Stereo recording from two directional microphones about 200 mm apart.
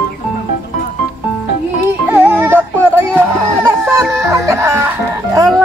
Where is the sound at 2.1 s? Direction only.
10° right (ahead or behind).